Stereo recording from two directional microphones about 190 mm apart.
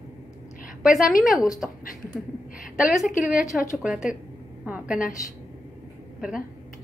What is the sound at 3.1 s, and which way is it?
Speech, 45° left (ahead or behind).